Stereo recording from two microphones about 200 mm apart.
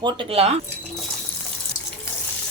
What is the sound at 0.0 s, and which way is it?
Speech, 25° right (ahead or behind).